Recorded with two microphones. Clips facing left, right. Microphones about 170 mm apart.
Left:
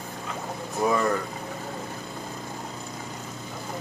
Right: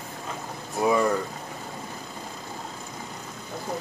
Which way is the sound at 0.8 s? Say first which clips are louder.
Right 2 dB; 10° right (ahead or behind).